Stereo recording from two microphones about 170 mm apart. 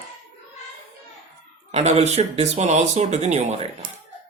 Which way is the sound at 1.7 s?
40° right (ahead or behind).